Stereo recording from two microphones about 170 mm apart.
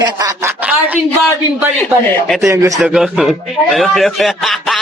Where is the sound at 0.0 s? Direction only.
20° right (ahead or behind).